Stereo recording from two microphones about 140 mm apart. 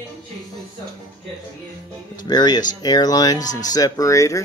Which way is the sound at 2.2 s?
30° left (ahead or behind).